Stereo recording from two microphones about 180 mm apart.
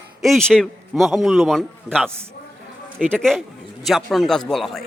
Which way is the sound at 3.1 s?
5° left (ahead or behind).